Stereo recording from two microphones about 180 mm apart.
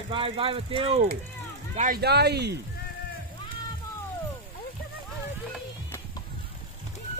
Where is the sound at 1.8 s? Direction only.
55° right (ahead or behind).